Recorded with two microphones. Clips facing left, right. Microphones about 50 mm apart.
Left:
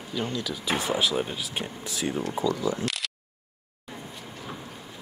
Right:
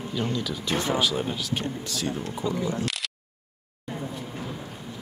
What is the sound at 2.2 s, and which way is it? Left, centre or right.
Speech, left.